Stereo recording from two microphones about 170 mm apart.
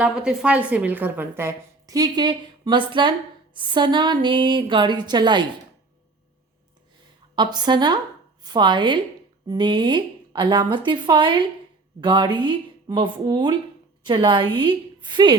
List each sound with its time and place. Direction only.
0.0 s a woman's voice: 5° right (ahead or behind); by 5.5 s 25° right (ahead or behind)
7.3 s a woman's voice: 25° right (ahead or behind)